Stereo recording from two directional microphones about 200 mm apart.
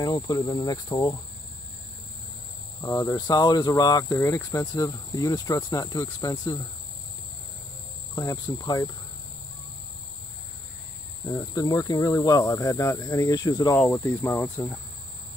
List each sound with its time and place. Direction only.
0.0 s speech: 15° left (ahead or behind)
2.8 s speech: 20° left (ahead or behind)
8.1 s speech: 15° left (ahead or behind)
11.2 s speech: 15° left (ahead or behind)